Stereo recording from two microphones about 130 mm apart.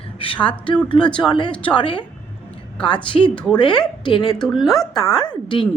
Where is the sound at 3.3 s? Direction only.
10° left (ahead or behind).